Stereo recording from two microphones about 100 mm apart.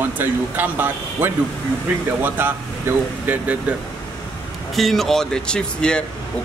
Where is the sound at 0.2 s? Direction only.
20° right (ahead or behind).